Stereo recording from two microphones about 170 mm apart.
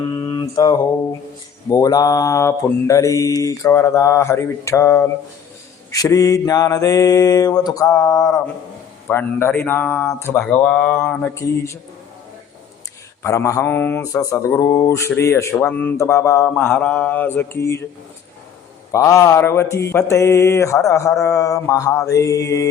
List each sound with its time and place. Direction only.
0.1 s mantra: 25° left (ahead or behind)
13.2 s mantra: 15° left (ahead or behind)
18.9 s mantra: 20° left (ahead or behind)